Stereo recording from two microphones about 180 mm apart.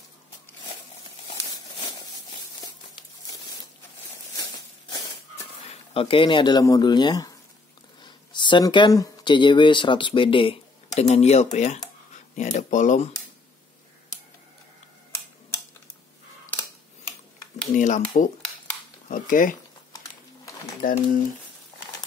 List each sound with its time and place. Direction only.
2.6 s a sound: 20° left (ahead or behind)
5.6 s speech: 35° left (ahead or behind)
17.7 s speech: 40° left (ahead or behind)
19.0 s speech: 50° left (ahead or behind)
20.8 s speech: 50° left (ahead or behind)